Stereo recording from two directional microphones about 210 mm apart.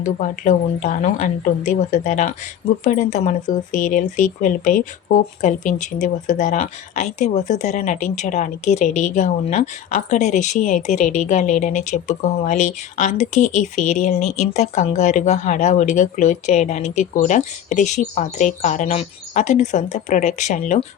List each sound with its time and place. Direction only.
0.0 s speech: 35° left (ahead or behind)